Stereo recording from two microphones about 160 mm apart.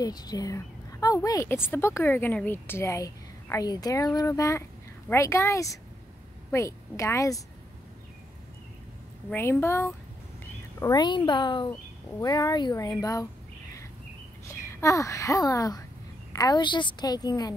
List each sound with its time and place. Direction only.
0.0 s a woman's voice: 25° left (ahead or behind)
9.3 s a woman's voice: 15° left (ahead or behind)
10.8 s a woman's voice: 25° left (ahead or behind)
14.5 s a woman's voice: 20° left (ahead or behind)